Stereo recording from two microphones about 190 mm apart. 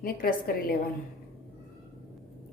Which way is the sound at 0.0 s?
50° left (ahead or behind).